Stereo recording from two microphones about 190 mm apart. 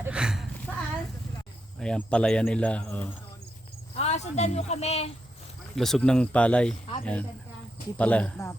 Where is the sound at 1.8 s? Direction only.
5° left (ahead or behind).